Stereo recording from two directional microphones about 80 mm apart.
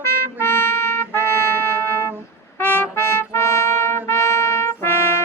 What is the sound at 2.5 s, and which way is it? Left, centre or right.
Trumpet, left.